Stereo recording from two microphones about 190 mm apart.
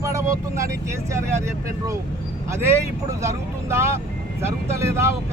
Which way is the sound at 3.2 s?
15° right (ahead or behind).